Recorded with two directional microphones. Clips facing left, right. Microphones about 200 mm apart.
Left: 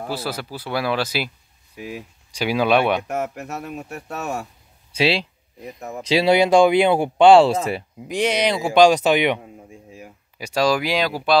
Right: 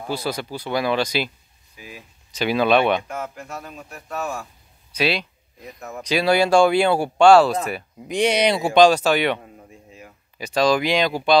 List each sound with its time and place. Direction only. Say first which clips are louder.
0.1 s speech: right 4 dB; 5° left (ahead or behind)
1.8 s speech: left 9 dB; 65° left (ahead or behind)
2.3 s speech: even; 10° left (ahead or behind)
3.1 s speech: left 5 dB; 70° left (ahead or behind)
4.9 s speech: left 2 dB; 30° left (ahead or behind)
8.1 s speech: right 1 dB; 5° left (ahead or behind)
8.8 s speech: left 3 dB; 15° left (ahead or behind)